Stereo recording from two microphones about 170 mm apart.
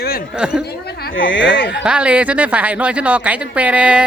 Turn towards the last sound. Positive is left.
turn(degrees=-5)  # may be behind; listen again after turning